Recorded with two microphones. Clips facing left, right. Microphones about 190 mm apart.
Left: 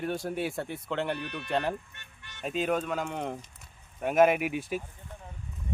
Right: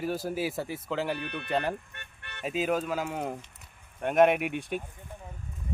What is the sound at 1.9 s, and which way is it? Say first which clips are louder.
Speech: right 5 dB; 60° right (ahead or behind).